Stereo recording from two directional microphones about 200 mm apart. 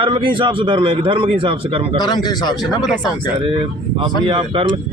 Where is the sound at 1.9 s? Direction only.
20° left (ahead or behind).